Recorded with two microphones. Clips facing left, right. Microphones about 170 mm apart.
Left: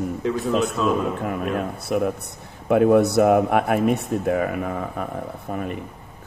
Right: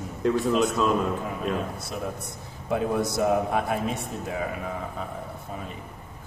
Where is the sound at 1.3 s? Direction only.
60° left (ahead or behind).